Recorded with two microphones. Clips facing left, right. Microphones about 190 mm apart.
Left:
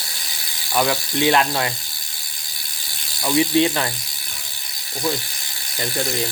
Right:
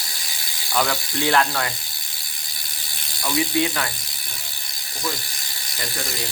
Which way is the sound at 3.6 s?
25° left (ahead or behind).